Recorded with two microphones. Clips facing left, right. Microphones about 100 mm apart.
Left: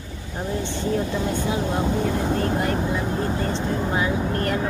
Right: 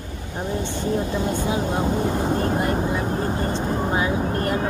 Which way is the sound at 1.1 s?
15° right (ahead or behind).